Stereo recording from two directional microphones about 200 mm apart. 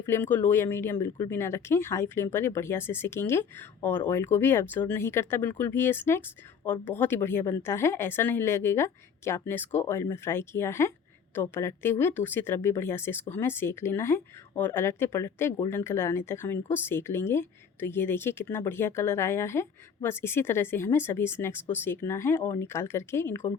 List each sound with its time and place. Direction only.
0.0 s speech: 10° left (ahead or behind)